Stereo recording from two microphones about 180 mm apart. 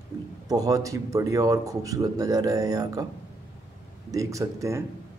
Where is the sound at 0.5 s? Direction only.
20° right (ahead or behind).